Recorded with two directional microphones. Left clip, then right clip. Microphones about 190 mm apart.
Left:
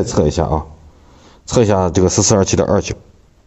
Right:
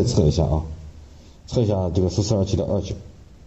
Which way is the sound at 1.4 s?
50° left (ahead or behind).